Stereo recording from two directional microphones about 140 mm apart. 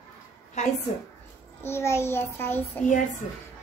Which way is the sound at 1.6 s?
20° left (ahead or behind).